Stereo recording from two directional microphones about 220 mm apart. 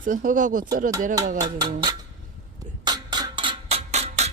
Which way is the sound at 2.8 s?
20° right (ahead or behind).